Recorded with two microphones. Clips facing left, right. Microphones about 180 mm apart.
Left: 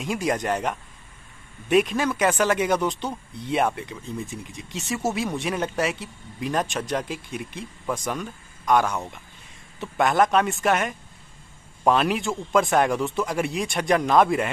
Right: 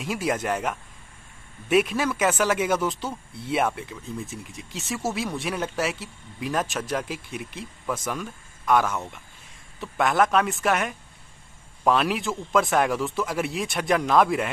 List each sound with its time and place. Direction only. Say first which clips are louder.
0.0 s speech: left 1 dB; 5° right (ahead or behind)